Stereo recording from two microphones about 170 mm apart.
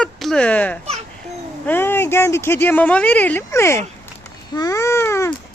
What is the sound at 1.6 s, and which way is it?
Speech, 10° left (ahead or behind).